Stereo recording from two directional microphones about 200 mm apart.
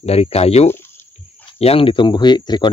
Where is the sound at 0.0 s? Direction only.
30° left (ahead or behind).